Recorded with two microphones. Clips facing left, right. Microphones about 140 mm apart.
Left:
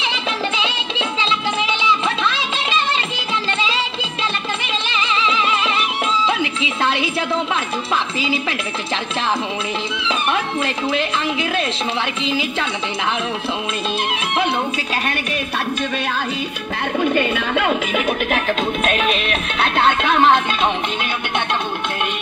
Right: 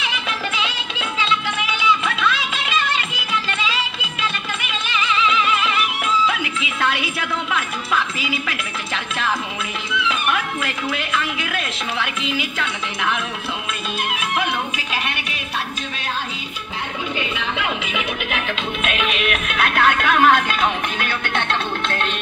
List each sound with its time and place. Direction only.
0.0 s music: 25° left (ahead or behind)
9.9 s a woman's voice: 25° left (ahead or behind)
14.0 s a woman's voice: 30° left (ahead or behind)
17.0 s speech: 55° left (ahead or behind); by 22.1 s 15° left (ahead or behind)